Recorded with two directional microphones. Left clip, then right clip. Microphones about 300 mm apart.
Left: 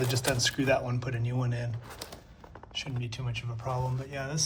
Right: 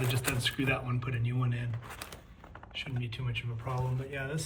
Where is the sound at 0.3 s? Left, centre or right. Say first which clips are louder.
Left 6 dB; centre.